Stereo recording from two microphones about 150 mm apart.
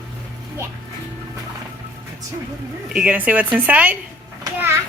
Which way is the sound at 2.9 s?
10° right (ahead or behind).